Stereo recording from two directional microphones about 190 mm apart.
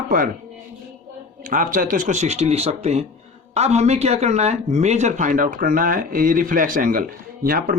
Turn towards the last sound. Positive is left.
turn(degrees=-50)  # may be behind; listen again after turning